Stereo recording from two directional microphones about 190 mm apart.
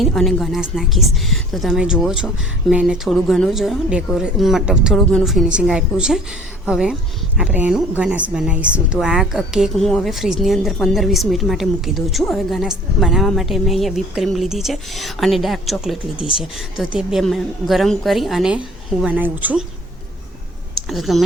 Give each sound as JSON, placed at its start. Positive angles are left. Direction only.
{"t": 0.0, "sound": "speech", "side_deg": 0}
{"t": 20.9, "sound": "speech", "side_deg": 0}